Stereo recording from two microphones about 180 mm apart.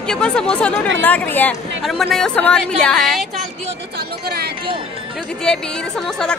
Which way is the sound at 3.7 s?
60° right (ahead or behind).